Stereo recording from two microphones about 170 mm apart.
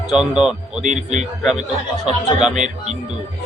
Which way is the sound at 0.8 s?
45° right (ahead or behind).